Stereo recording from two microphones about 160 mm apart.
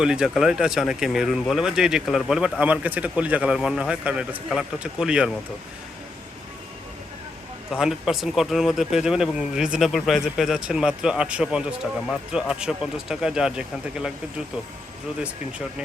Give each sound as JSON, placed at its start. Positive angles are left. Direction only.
{"t": 0.0, "sound": "speech", "side_deg": -5}
{"t": 7.7, "sound": "speech", "side_deg": -5}